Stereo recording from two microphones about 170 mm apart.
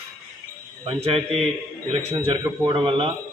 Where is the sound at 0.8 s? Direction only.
35° right (ahead or behind).